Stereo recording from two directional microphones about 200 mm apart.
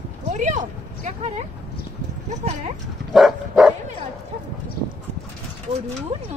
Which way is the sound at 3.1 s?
Centre (ahead or behind).